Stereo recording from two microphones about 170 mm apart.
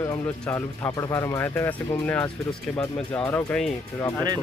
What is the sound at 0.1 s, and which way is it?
Speech, 10° left (ahead or behind).